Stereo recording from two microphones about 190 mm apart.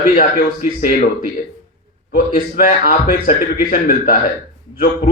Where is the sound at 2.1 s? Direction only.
50° left (ahead or behind).